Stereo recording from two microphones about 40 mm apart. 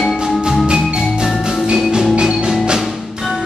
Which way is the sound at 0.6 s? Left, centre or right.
Centre.